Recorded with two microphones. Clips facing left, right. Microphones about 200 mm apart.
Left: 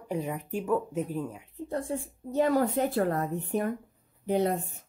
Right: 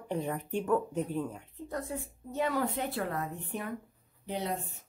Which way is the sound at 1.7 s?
30° left (ahead or behind).